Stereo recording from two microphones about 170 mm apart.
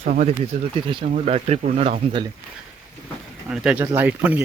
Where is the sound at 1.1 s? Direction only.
40° right (ahead or behind).